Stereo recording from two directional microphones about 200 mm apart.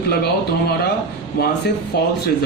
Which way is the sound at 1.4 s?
50° left (ahead or behind).